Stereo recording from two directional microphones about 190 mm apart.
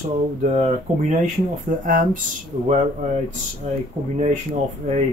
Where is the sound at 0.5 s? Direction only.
35° right (ahead or behind).